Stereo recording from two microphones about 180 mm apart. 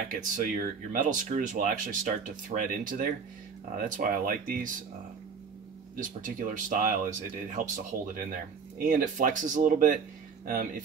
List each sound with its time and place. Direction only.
0.1 s speech: 50° right (ahead or behind)
5.9 s speech: 45° right (ahead or behind)